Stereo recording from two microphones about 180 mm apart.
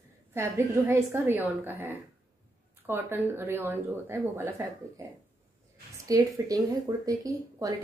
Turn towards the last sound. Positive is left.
turn(degrees=-20)  # may be behind; listen again after turning